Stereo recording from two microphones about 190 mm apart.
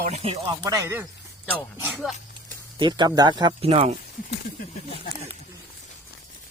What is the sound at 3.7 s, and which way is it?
Speech, 35° right (ahead or behind).